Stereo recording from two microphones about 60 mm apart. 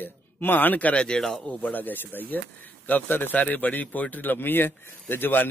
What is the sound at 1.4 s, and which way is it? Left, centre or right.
A man's voice, left.